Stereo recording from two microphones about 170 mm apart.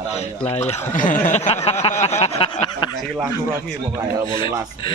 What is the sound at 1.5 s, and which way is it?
Speech, 40° left (ahead or behind).